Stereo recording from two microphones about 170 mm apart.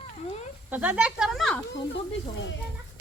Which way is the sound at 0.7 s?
10° right (ahead or behind).